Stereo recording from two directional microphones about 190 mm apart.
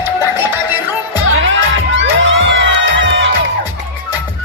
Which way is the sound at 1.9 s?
90° right.